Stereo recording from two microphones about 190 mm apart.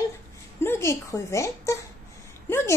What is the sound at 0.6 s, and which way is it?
A woman's voice, 15° left (ahead or behind).